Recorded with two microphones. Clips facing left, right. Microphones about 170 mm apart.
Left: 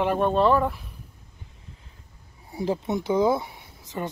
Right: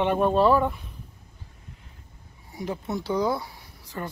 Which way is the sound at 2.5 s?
30° left (ahead or behind).